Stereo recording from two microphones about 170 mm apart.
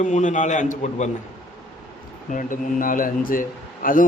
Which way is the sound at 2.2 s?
50° left (ahead or behind).